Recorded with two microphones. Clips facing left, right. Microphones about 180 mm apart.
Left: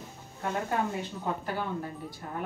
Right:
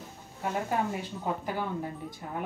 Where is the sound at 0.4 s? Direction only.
10° right (ahead or behind).